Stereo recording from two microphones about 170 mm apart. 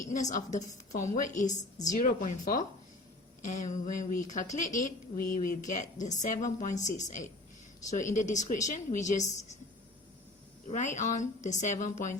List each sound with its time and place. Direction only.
0.1 s a woman's voice: 45° left (ahead or behind)
10.7 s a woman's voice: 45° left (ahead or behind)